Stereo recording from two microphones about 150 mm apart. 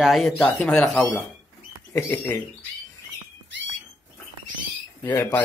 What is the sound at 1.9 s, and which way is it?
Speech, 15° left (ahead or behind).